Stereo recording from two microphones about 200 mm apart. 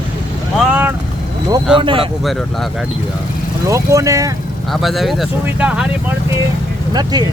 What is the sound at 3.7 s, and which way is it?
Speech, 15° right (ahead or behind).